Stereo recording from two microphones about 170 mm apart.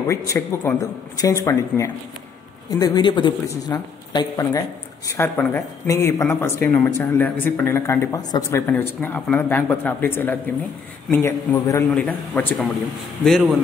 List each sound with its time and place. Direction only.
0.0 s a man's voice: 15° left (ahead or behind); by 13.6 s centre (ahead or behind)